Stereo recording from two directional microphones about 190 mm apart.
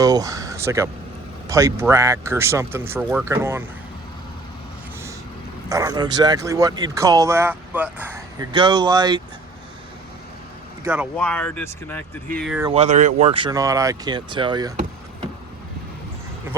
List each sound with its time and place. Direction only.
0.0 s speech: 20° right (ahead or behind)
5.6 s speech: 15° right (ahead or behind)
10.8 s speech: 10° right (ahead or behind)
11.2 s speech: 5° left (ahead or behind)
12.7 s speech: 40° right (ahead or behind)